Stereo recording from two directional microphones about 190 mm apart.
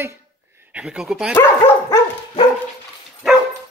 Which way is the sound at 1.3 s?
15° left (ahead or behind).